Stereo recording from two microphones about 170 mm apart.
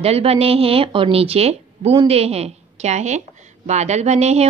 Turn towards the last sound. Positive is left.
turn(degrees=-40)  # may be behind; listen again after turning